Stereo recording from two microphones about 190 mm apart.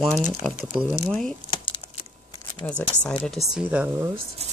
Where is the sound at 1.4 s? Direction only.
25° left (ahead or behind).